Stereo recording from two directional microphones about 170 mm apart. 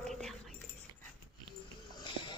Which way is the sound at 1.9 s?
25° left (ahead or behind).